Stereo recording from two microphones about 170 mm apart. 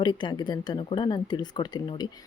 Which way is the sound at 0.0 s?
25° left (ahead or behind).